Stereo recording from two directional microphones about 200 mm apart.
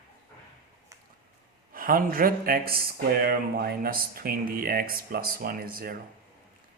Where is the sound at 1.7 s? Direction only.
45° right (ahead or behind).